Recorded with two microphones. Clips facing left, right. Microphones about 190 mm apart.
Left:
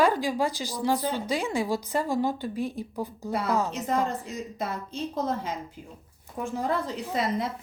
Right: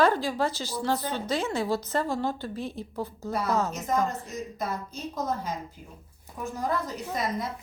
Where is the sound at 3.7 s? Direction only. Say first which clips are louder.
Even; 30° left (ahead or behind).